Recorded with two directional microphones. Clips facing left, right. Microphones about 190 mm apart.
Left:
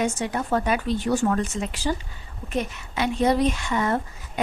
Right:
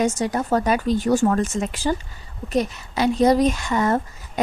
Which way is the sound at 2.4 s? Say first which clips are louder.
Right 5 dB; 35° right (ahead or behind).